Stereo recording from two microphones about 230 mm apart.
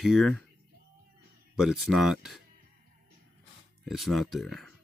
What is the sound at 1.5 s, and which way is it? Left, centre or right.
Speech, centre.